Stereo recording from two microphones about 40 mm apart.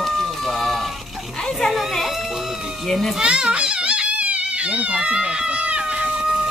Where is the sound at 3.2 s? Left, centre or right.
Right.